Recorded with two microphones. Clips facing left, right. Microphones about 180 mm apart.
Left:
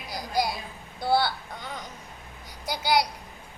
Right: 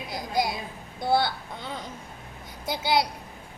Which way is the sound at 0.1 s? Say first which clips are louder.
Even; 25° right (ahead or behind).